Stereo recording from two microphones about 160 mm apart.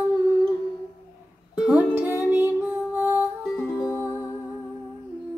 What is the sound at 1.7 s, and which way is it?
Music, 10° right (ahead or behind).